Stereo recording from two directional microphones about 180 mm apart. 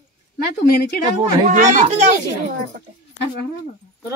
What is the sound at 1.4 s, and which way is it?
Speech, 45° right (ahead or behind).